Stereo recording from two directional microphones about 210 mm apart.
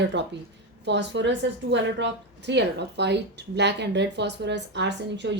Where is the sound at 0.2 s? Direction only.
55° right (ahead or behind).